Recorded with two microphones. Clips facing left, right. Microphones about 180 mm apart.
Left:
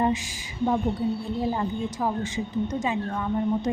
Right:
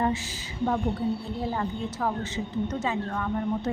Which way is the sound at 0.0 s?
15° left (ahead or behind).